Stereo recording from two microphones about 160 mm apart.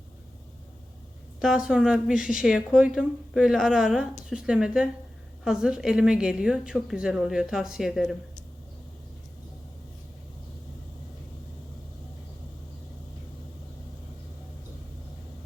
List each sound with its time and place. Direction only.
1.4 s a woman's voice: 5° right (ahead or behind)